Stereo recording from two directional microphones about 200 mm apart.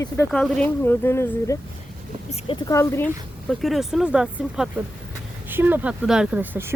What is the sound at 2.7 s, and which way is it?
Speech, 15° left (ahead or behind).